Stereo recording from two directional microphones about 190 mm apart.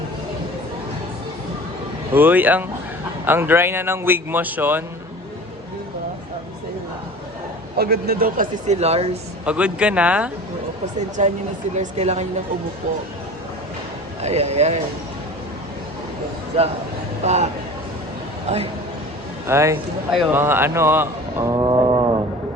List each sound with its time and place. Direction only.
2.1 s speech: 10° right (ahead or behind)
7.8 s speech: 55° right (ahead or behind); by 9.0 s 35° right (ahead or behind)
9.5 s speech: 5° right (ahead or behind)
11.2 s speech: 40° right (ahead or behind)
14.2 s speech: 35° right (ahead or behind)
17.2 s speech: 35° right (ahead or behind)
19.5 s speech: 15° right (ahead or behind)